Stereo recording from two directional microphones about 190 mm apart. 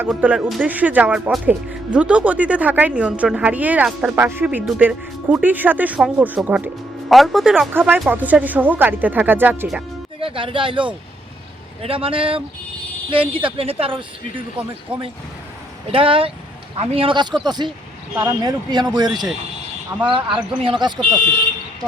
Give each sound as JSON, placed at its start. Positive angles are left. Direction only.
{"t": 0.1, "sound": "speech", "side_deg": -5}
{"t": 10.2, "sound": "speech", "side_deg": -30}
{"t": 15.9, "sound": "speech", "side_deg": -30}
{"t": 18.1, "sound": "speech", "side_deg": -10}
{"t": 18.7, "sound": "speech", "side_deg": -20}
{"t": 20.1, "sound": "speech", "side_deg": -25}